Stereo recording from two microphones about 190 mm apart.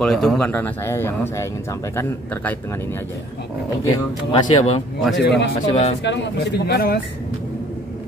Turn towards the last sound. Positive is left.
turn(degrees=55)  # may be behind; listen again after turning